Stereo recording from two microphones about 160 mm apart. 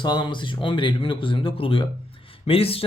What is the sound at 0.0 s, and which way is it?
Speech, 25° left (ahead or behind).